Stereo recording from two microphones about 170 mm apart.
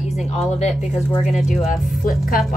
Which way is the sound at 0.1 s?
40° left (ahead or behind).